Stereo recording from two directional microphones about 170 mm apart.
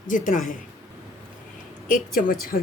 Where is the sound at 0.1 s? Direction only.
50° left (ahead or behind).